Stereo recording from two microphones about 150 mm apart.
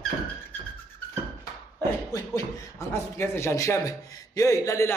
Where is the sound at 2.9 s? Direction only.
15° left (ahead or behind).